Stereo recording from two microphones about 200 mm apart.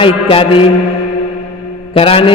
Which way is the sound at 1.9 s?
30° left (ahead or behind).